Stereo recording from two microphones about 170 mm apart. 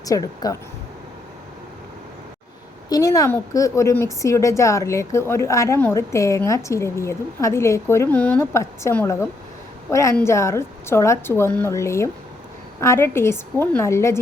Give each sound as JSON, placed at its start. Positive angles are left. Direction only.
{"t": 0.0, "sound": "speech", "side_deg": 20}
{"t": 2.9, "sound": "a woman's voice", "side_deg": 20}